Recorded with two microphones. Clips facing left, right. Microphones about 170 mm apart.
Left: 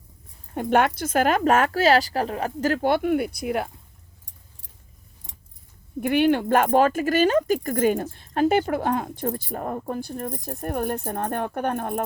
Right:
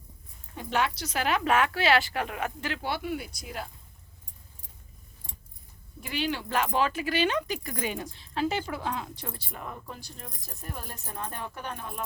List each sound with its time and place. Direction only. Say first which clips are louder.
0.5 s speech: left 9 dB; 55° left (ahead or behind)
5.3 s keys jangling: even; 20° left (ahead or behind)
6.0 s speech: left 12 dB; 55° left (ahead or behind)